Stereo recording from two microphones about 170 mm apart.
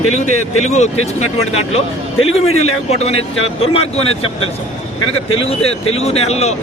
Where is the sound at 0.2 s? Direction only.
40° left (ahead or behind).